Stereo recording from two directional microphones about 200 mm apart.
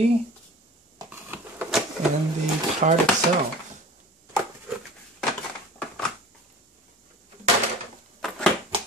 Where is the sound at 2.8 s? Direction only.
40° right (ahead or behind).